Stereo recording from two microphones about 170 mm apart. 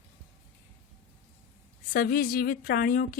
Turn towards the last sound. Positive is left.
turn(degrees=55)  # may be behind; listen again after turning